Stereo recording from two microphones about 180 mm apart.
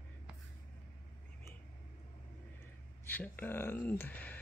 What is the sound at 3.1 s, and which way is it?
Speech, 10° left (ahead or behind).